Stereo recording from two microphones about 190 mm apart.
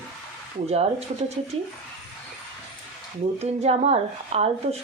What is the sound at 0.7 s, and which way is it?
Speech, 35° right (ahead or behind).